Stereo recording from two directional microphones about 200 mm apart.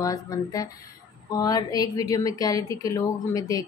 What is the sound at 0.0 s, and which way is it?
A woman's voice, 20° left (ahead or behind).